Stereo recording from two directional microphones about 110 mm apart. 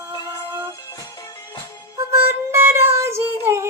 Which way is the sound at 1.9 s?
25° right (ahead or behind).